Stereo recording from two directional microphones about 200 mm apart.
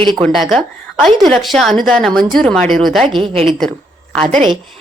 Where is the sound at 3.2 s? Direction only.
25° right (ahead or behind).